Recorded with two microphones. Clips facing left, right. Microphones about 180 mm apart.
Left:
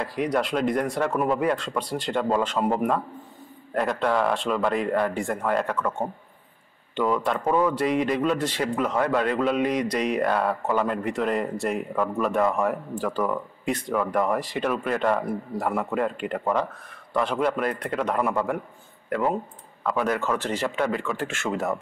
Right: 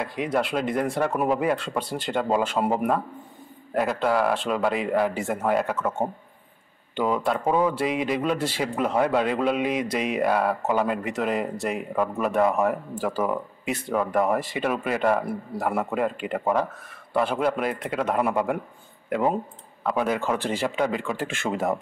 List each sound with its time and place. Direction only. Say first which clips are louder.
0.0 s a man's voice: left 1 dB; 5° right (ahead or behind)